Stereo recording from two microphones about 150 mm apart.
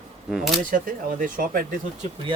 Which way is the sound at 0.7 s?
65° right (ahead or behind).